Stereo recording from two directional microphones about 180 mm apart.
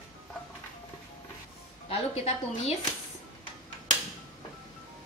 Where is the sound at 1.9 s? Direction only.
35° left (ahead or behind).